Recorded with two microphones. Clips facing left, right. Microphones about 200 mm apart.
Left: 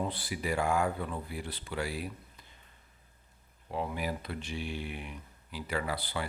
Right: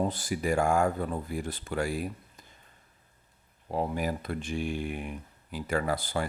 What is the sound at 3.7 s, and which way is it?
Speech, 40° right (ahead or behind).